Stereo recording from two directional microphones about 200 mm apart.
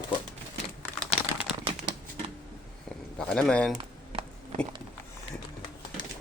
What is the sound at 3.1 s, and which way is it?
Speech, 5° left (ahead or behind).